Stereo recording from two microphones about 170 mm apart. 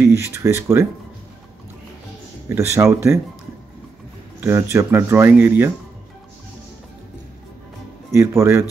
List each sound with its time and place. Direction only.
0.0 s speech: 15° right (ahead or behind)
2.5 s speech: 15° right (ahead or behind)
4.4 s speech: 15° right (ahead or behind)
8.1 s speech: 15° right (ahead or behind)